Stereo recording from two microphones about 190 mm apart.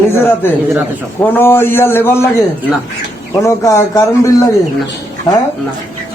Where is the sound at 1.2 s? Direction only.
10° left (ahead or behind).